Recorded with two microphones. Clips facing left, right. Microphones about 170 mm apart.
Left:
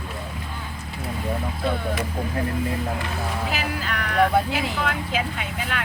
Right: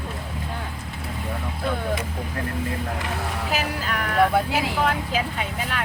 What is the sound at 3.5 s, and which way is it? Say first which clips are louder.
Speech: right 1 dB; 45° right (ahead or behind).